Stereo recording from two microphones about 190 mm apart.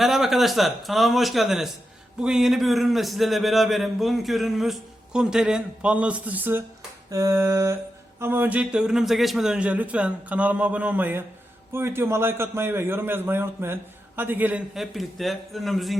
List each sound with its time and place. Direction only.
0.0 s a man's voice: centre (ahead or behind)